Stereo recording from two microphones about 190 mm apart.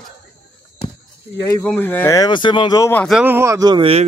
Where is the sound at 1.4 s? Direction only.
20° left (ahead or behind).